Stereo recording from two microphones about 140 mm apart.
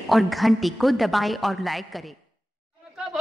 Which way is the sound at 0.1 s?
Centre (ahead or behind).